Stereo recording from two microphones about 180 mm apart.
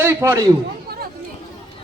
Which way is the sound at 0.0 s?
15° right (ahead or behind).